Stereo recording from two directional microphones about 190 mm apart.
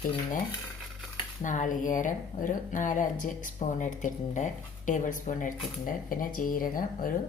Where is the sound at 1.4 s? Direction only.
40° left (ahead or behind).